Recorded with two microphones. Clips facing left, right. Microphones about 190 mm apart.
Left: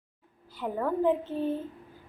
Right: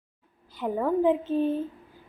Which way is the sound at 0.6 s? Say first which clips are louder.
Right 4 dB; 15° right (ahead or behind).